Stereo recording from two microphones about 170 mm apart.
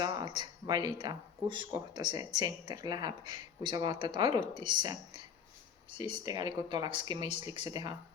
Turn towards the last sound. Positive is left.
turn(degrees=-25)  # may be behind; listen again after turning